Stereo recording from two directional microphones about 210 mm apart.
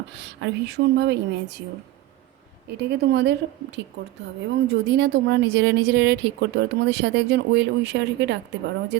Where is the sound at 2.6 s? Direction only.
55° right (ahead or behind).